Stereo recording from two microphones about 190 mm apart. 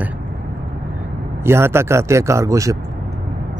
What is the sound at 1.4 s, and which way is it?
Speech, 15° right (ahead or behind).